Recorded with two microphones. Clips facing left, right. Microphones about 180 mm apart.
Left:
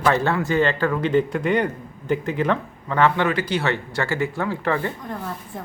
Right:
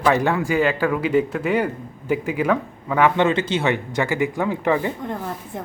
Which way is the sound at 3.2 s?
25° right (ahead or behind).